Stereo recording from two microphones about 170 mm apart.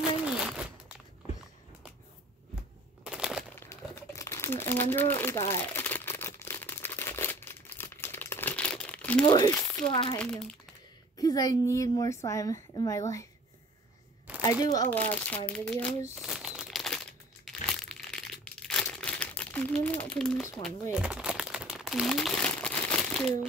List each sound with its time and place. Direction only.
0.0 s a sound: 5° right (ahead or behind)
3.0 s a sound: 5° right (ahead or behind)
3.5 s crumpling: 15° left (ahead or behind)
9.2 s a woman's voice: 25° left (ahead or behind)
10.1 s speech: 5° left (ahead or behind)
11.1 s a woman's voice: 20° left (ahead or behind)
14.4 s speech: 20° left (ahead or behind)
14.9 s speech: 10° left (ahead or behind)
16.2 s crumpling: 5° right (ahead or behind)